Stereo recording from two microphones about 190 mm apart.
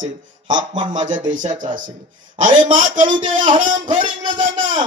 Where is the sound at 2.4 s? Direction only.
45° right (ahead or behind).